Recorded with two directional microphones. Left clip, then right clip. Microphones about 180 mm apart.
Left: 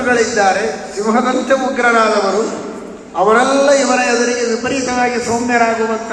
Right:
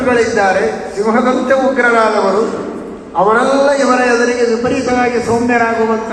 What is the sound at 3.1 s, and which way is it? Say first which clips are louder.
A man's voice: right 1 dB; 25° left (ahead or behind).